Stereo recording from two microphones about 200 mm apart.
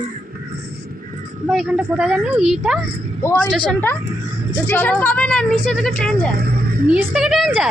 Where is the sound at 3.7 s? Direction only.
10° left (ahead or behind).